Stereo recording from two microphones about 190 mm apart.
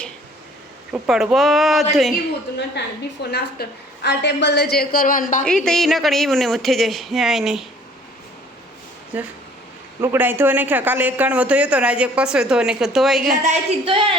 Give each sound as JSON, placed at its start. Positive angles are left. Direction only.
{"t": 0.9, "sound": "speech", "side_deg": 0}
{"t": 2.8, "sound": "a woman's voice", "side_deg": 65}
{"t": 5.5, "sound": "speech", "side_deg": 5}
{"t": 9.1, "sound": "speech", "side_deg": -10}
{"t": 13.4, "sound": "speech", "side_deg": -35}